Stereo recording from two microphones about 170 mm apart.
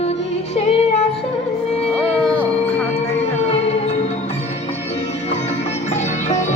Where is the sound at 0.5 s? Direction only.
40° left (ahead or behind).